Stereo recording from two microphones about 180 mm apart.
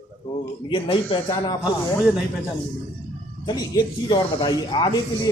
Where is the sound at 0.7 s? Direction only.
30° left (ahead or behind).